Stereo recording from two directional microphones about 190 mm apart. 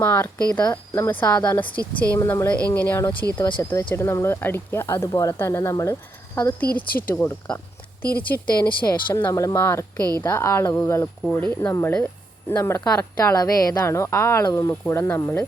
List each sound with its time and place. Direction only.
0.0 s a woman's voice: 10° left (ahead or behind)
0.5 s a woman's voice: 20° left (ahead or behind)
3.3 s a woman's voice: 20° left (ahead or behind)